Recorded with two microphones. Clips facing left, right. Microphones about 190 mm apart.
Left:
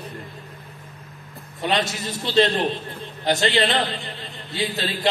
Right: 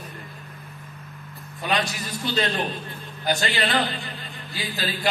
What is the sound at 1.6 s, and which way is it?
A man's voice, 25° left (ahead or behind).